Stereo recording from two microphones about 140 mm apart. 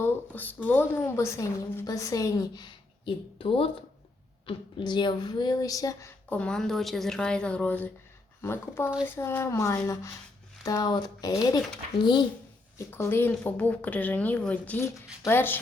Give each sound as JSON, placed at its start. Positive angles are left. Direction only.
{"t": 0.0, "sound": "a woman's voice", "side_deg": 10}
{"t": 3.3, "sound": "a woman's voice", "side_deg": 40}
{"t": 6.2, "sound": "a woman's voice", "side_deg": 10}
{"t": 12.8, "sound": "speech", "side_deg": 20}